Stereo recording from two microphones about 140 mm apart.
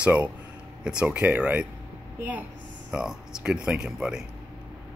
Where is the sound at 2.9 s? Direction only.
5° right (ahead or behind).